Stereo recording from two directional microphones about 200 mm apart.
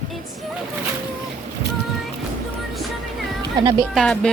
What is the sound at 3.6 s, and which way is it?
Speech, 20° right (ahead or behind).